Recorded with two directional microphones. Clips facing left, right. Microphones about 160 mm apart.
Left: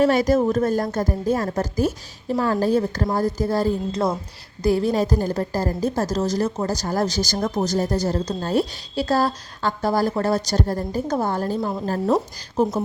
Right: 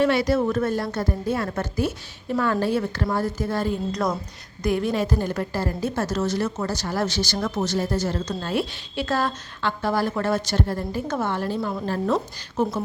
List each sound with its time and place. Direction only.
0.0 s a woman's voice: 40° left (ahead or behind)